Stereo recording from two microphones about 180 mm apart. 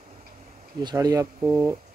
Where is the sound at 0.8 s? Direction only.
20° right (ahead or behind).